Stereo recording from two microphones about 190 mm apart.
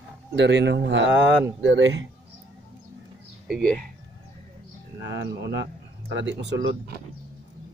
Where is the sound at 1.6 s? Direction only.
85° right.